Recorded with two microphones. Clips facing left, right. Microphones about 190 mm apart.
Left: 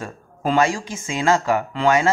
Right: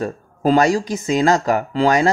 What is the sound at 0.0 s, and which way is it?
Speech, 40° right (ahead or behind).